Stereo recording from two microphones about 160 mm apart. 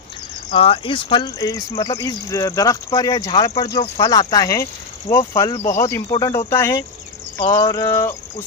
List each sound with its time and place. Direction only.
0.5 s speech: 35° left (ahead or behind); by 8.1 s 15° left (ahead or behind)